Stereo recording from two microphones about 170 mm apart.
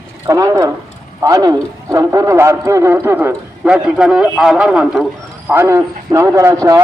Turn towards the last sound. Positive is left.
turn(degrees=-15)  # may be behind; listen again after turning